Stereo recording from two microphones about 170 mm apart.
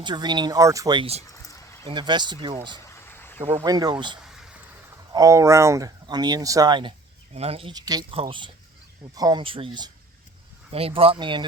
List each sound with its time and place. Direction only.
0.0 s speech: 25° right (ahead or behind)
2.9 s a sound: 15° left (ahead or behind)
3.5 s speech: 20° right (ahead or behind)
7.7 s speech: 25° right (ahead or behind)